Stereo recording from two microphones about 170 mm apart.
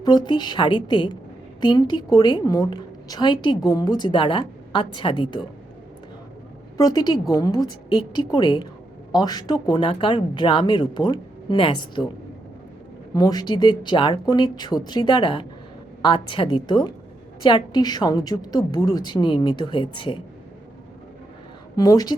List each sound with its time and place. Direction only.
0.0 s a woman's voice: 25° left (ahead or behind)
6.7 s a woman's voice: 25° left (ahead or behind)
13.1 s a woman's voice: 25° left (ahead or behind)
21.8 s a woman's voice: 25° left (ahead or behind)